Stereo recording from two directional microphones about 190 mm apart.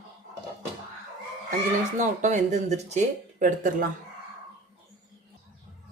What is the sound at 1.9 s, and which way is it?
Speech, 40° right (ahead or behind).